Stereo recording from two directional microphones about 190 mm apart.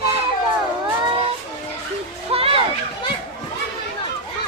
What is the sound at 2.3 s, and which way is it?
Children playing, 30° right (ahead or behind).